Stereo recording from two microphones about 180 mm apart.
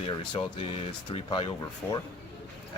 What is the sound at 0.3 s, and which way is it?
Speech, 30° left (ahead or behind).